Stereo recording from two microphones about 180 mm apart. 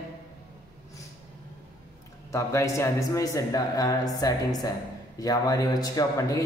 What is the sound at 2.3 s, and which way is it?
Speech, 15° left (ahead or behind).